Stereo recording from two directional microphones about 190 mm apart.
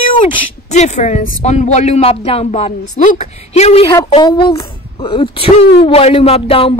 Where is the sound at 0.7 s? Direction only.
35° left (ahead or behind).